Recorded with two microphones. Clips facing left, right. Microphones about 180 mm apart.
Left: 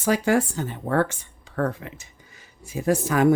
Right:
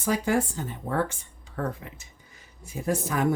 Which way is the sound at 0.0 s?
85° left.